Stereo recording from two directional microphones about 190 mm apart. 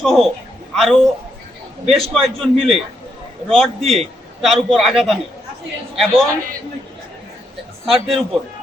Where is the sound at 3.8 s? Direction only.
30° right (ahead or behind).